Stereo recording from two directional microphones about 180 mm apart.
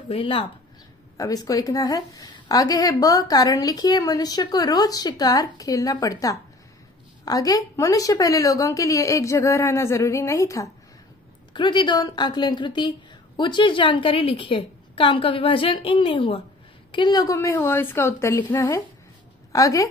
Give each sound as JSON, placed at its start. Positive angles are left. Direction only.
{"t": 0.1, "sound": "speech", "side_deg": 30}
{"t": 1.1, "sound": "a woman's voice", "side_deg": 20}